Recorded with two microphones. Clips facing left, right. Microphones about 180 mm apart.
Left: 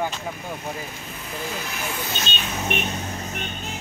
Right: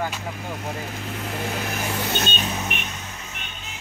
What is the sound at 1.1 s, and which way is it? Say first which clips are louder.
Speech: right 4 dB; 65° right (ahead or behind).